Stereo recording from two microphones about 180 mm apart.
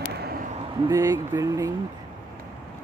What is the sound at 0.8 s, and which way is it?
Speech, 20° right (ahead or behind).